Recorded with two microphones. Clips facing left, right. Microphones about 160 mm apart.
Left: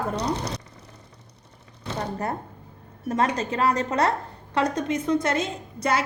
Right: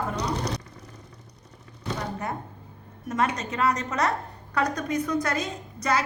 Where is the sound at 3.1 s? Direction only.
30° left (ahead or behind).